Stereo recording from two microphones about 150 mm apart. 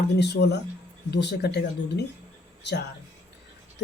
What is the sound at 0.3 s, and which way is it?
Speech, 90° left.